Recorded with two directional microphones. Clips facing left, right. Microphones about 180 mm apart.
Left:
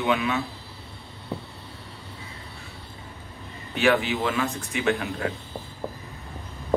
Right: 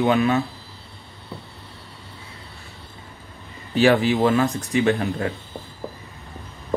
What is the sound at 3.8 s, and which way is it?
Speech, 35° right (ahead or behind).